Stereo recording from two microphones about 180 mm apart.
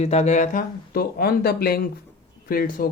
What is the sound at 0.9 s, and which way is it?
Speech, 60° left (ahead or behind).